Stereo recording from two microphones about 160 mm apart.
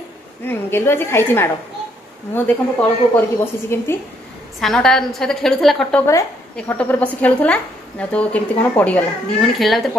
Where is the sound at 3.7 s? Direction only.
15° left (ahead or behind).